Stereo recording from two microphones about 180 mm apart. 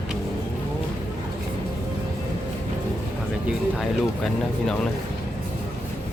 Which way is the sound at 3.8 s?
Centre (ahead or behind).